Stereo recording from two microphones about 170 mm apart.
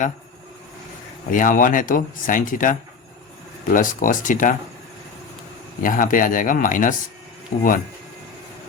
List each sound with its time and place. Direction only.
1.3 s speech: 50° left (ahead or behind)
5.8 s speech: 50° left (ahead or behind)